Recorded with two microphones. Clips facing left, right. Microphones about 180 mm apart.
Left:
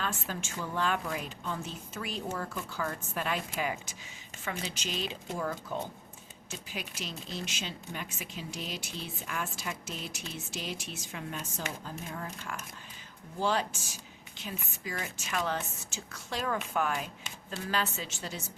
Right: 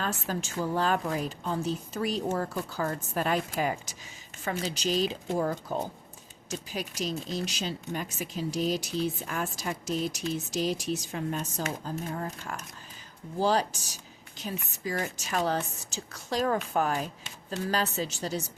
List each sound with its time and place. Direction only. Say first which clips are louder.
0.0 s a woman's voice: right 4 dB; 40° right (ahead or behind)